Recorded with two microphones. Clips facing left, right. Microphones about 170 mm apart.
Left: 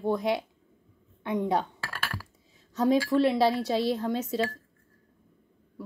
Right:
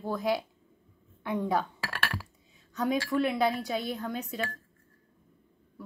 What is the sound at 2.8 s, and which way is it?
A woman's voice, 25° left (ahead or behind).